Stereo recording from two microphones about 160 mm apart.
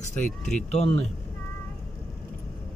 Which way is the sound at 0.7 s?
40° left (ahead or behind).